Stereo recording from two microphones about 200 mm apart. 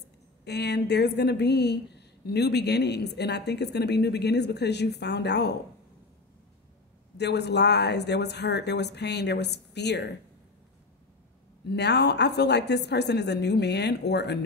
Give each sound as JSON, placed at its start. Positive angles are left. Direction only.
{"t": 0.5, "sound": "a woman's voice", "side_deg": 55}
{"t": 7.2, "sound": "a woman's voice", "side_deg": 55}
{"t": 11.6, "sound": "a woman's voice", "side_deg": 55}